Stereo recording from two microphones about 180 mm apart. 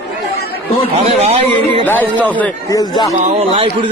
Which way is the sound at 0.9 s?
35° right (ahead or behind).